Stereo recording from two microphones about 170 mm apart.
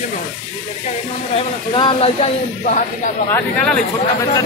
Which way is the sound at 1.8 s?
30° left (ahead or behind).